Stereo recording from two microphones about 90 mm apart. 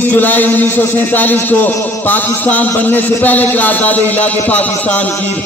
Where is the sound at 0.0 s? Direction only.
20° left (ahead or behind).